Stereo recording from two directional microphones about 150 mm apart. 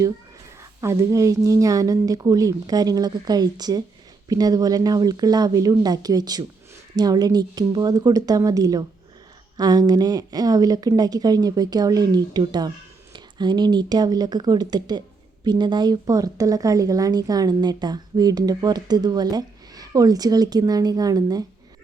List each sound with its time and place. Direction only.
0.6 s speech: 20° right (ahead or behind)